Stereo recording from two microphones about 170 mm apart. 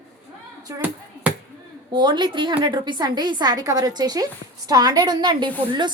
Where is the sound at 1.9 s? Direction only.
25° right (ahead or behind).